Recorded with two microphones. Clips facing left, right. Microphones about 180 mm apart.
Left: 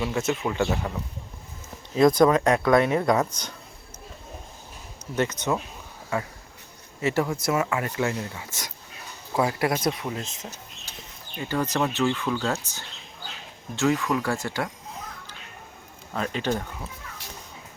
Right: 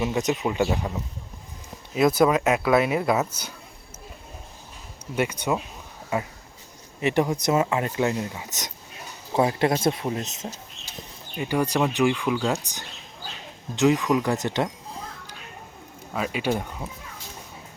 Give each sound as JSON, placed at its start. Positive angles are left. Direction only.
{"t": 0.0, "sound": "speech", "side_deg": -20}
{"t": 5.1, "sound": "speech", "side_deg": -10}
{"t": 11.3, "sound": "speech", "side_deg": -15}
{"t": 16.1, "sound": "speech", "side_deg": -10}